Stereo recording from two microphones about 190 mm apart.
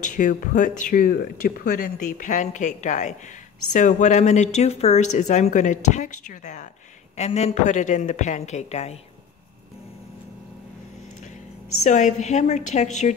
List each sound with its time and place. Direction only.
0.0 s speech: 40° left (ahead or behind)
11.8 s speech: 40° left (ahead or behind)